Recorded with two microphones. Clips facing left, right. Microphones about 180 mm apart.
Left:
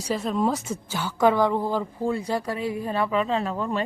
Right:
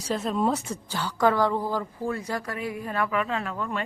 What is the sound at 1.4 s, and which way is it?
A woman's voice, 20° left (ahead or behind).